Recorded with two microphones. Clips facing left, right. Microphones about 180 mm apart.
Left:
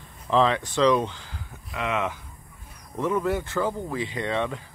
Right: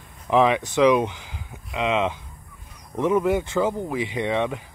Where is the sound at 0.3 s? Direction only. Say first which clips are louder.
Right 3 dB; 15° right (ahead or behind).